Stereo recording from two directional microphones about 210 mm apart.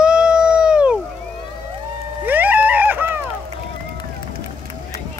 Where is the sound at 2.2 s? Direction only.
10° right (ahead or behind).